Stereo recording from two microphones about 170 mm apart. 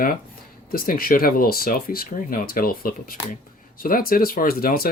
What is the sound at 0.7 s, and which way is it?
Speech, 60° left (ahead or behind).